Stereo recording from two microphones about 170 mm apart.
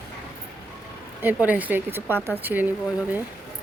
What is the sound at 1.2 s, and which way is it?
Speech, 10° right (ahead or behind).